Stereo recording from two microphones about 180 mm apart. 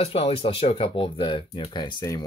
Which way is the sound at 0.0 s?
30° left (ahead or behind).